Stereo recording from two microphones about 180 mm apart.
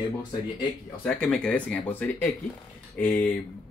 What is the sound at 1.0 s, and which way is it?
Speech, 5° left (ahead or behind).